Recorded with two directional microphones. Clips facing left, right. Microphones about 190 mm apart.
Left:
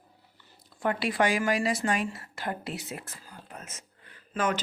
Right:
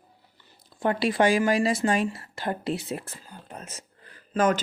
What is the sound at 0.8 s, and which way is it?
A woman's voice, 30° right (ahead or behind).